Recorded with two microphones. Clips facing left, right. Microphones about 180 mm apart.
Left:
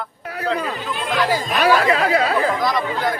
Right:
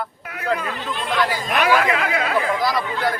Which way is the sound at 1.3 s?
35° left (ahead or behind).